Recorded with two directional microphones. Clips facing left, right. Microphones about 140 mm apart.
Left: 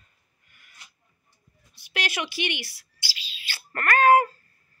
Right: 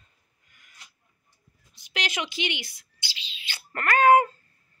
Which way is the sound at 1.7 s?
15° right (ahead or behind).